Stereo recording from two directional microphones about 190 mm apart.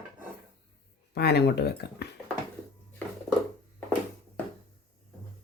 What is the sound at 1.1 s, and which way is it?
Dishes, 60° left (ahead or behind).